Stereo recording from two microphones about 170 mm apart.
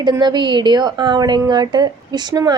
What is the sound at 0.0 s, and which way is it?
A woman's voice, 25° right (ahead or behind).